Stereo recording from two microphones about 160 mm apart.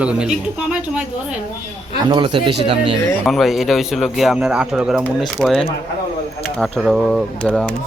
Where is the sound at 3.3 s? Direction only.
Centre (ahead or behind).